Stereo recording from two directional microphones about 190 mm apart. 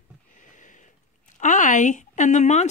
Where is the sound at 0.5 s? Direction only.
40° left (ahead or behind).